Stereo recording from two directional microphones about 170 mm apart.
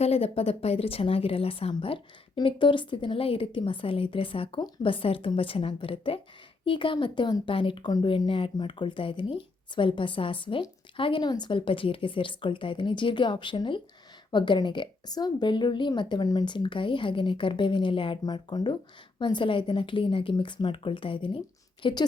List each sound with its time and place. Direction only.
0.0 s a woman's voice: 35° left (ahead or behind)